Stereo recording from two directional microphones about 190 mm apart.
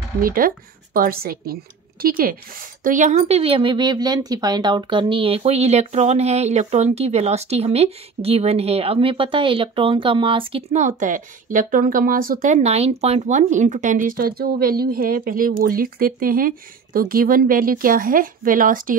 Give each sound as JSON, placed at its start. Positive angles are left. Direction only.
{"t": 0.2, "sound": "speech", "side_deg": -50}
{"t": 10.8, "sound": "speech", "side_deg": -40}